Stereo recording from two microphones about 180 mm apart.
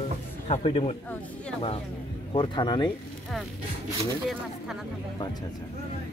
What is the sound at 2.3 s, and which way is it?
Speech, 25° left (ahead or behind).